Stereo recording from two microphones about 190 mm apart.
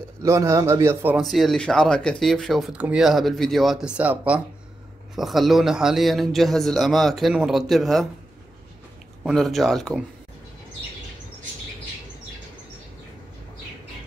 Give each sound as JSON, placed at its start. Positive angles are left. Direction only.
{"t": 0.2, "sound": "a man's voice", "side_deg": -15}
{"t": 1.2, "sound": "speech", "side_deg": 0}
{"t": 9.2, "sound": "speech", "side_deg": 0}